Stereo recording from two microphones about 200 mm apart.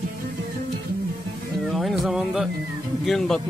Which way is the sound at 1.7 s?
Centre (ahead or behind).